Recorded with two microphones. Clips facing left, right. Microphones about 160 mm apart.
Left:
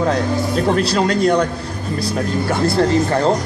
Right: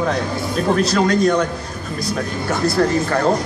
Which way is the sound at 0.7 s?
30° left (ahead or behind).